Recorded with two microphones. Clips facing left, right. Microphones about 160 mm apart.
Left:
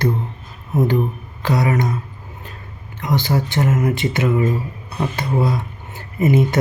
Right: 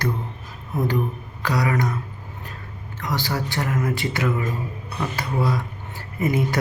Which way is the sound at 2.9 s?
20° left (ahead or behind).